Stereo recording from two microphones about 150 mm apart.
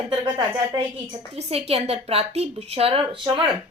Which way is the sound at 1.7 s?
40° right (ahead or behind).